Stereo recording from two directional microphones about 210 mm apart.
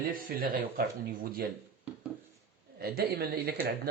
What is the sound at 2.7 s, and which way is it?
Speech, 50° right (ahead or behind).